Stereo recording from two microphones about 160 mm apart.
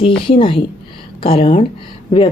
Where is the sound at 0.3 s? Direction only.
35° left (ahead or behind).